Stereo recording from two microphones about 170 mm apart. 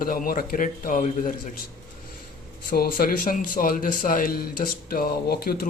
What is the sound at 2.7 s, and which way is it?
A man's voice, 65° left (ahead or behind).